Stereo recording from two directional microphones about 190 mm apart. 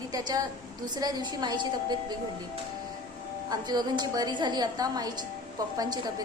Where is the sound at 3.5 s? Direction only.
20° right (ahead or behind).